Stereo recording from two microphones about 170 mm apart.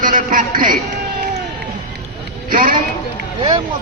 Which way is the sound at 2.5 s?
60° right (ahead or behind).